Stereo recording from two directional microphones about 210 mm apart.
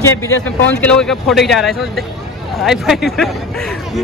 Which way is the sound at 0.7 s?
5° left (ahead or behind).